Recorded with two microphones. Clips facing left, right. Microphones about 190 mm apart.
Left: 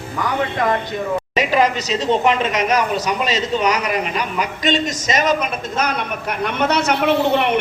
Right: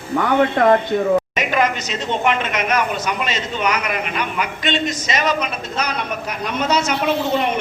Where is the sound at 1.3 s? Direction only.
35° left (ahead or behind).